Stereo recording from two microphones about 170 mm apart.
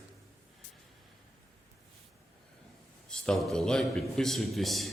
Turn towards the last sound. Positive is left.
turn(degrees=0)  # may be behind; listen again after turning